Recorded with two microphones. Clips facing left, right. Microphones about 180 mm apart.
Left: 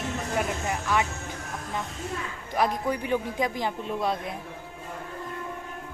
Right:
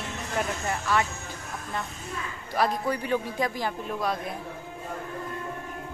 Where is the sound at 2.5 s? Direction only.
15° left (ahead or behind).